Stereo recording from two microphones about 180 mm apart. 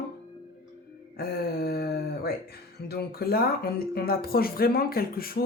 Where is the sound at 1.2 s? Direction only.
60° left (ahead or behind).